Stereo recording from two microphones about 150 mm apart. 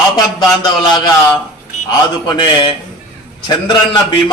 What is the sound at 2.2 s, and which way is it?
Speech, 30° left (ahead or behind).